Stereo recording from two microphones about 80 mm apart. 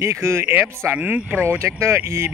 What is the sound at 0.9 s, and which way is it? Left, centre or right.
Speech, right.